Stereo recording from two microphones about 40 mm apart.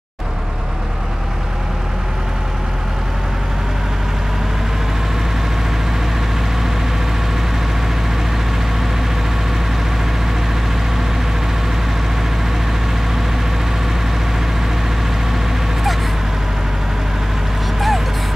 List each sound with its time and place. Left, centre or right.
17.7 s vehicle: centre